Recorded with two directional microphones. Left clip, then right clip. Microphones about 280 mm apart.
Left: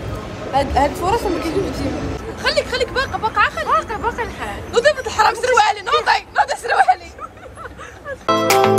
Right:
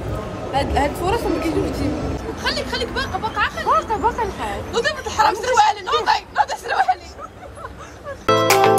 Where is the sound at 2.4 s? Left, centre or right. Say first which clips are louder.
Left 5 dB; centre.